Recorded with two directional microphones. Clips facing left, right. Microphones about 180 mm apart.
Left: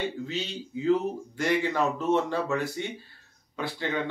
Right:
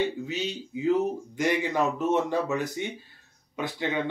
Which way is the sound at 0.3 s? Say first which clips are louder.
Right 2 dB; 15° right (ahead or behind).